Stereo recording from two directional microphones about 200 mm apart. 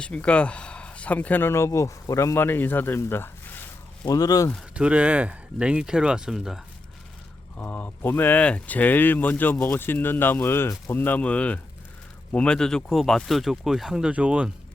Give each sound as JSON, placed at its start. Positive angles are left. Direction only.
{"t": 0.0, "sound": "speech", "side_deg": 5}
{"t": 4.5, "sound": "speech", "side_deg": -5}
{"t": 7.5, "sound": "speech", "side_deg": 10}